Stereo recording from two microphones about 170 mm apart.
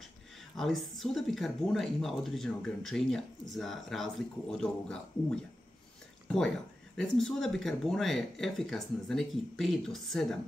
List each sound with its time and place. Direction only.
0.6 s speech: centre (ahead or behind)
6.2 s a sound: 5° left (ahead or behind)
7.0 s speech: 5° left (ahead or behind)